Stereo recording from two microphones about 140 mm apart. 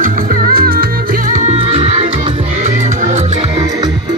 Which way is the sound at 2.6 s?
55° right (ahead or behind).